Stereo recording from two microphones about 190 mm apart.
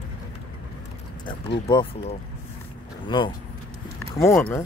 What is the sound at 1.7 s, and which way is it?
Speech, 25° left (ahead or behind).